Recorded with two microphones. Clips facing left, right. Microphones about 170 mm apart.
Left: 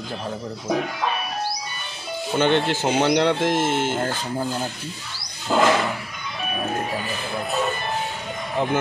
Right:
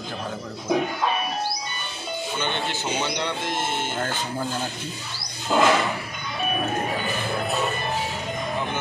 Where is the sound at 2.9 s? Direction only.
75° left (ahead or behind).